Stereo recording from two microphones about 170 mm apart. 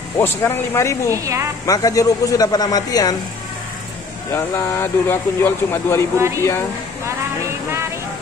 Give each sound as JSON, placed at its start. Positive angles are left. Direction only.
{"t": 0.2, "sound": "speech", "side_deg": 15}
{"t": 1.1, "sound": "a woman's voice", "side_deg": -20}
{"t": 1.7, "sound": "a man's voice", "side_deg": 20}
{"t": 4.3, "sound": "speech", "side_deg": 15}
{"t": 6.1, "sound": "a woman's voice", "side_deg": -15}